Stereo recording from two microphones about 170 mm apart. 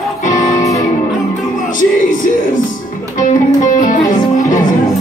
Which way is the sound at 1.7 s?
50° left (ahead or behind).